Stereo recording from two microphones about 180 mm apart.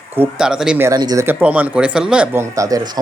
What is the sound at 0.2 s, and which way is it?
Speech, 5° right (ahead or behind).